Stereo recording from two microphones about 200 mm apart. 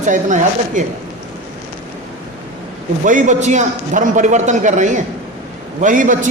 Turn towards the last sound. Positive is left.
turn(degrees=-40)  # may be behind; listen again after turning